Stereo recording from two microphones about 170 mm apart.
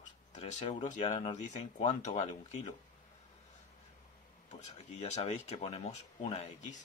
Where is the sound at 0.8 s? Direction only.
40° left (ahead or behind).